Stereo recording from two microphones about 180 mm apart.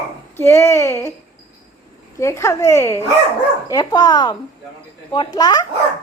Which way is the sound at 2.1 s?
15° left (ahead or behind).